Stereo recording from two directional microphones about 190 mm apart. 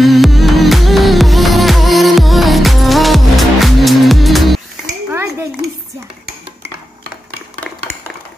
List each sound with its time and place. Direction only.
0.0 s music: centre (ahead or behind)
5.1 s dishes: 15° right (ahead or behind)